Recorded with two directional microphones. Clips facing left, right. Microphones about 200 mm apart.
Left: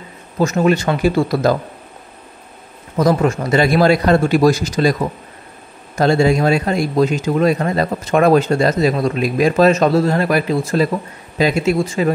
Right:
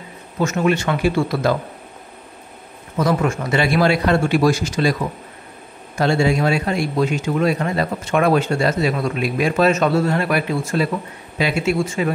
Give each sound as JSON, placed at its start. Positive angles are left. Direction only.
{"t": 0.4, "sound": "a man's voice", "side_deg": 35}
{"t": 3.0, "sound": "a man's voice", "side_deg": 35}
{"t": 5.9, "sound": "a man's voice", "side_deg": 40}